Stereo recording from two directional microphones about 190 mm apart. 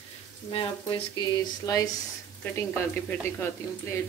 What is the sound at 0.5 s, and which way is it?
Speech, 30° left (ahead or behind).